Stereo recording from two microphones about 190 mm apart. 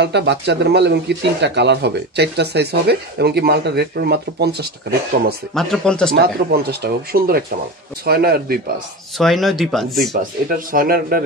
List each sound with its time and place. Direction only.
0.0 s speech: 60° right (ahead or behind)
5.5 s speech: centre (ahead or behind)
6.1 s speech: 55° right (ahead or behind)
9.2 s speech: centre (ahead or behind)
10.7 s speech: 50° right (ahead or behind)